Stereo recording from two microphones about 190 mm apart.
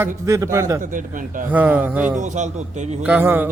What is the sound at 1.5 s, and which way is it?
Speech, 10° right (ahead or behind).